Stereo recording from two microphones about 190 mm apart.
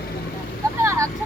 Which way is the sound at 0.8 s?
15° right (ahead or behind).